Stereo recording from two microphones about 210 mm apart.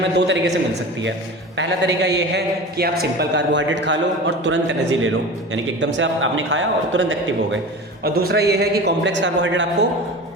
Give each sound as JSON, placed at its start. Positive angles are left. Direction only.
{"t": 0.0, "sound": "a man's voice", "side_deg": -55}
{"t": 8.0, "sound": "a man's voice", "side_deg": -50}